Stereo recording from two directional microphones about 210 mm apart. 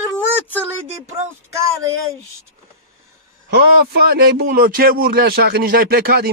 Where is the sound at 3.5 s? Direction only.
50° right (ahead or behind).